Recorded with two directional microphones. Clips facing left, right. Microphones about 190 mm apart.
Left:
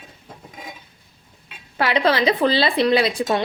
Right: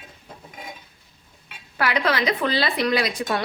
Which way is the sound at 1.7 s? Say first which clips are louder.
Left 4 dB; 25° left (ahead or behind).